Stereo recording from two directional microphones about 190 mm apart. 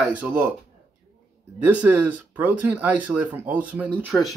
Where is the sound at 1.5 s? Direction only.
5° right (ahead or behind).